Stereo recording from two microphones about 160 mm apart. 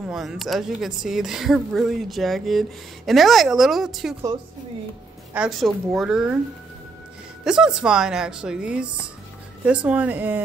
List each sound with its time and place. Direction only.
0.0 s speech: 5° right (ahead or behind)
5.3 s speech: 5° right (ahead or behind)
7.4 s speech: 5° right (ahead or behind)